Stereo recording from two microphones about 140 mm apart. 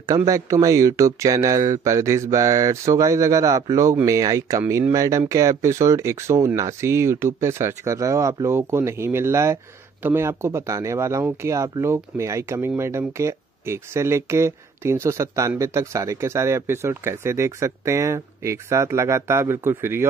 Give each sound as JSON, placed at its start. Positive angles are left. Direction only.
{"t": 0.3, "sound": "speech", "side_deg": -25}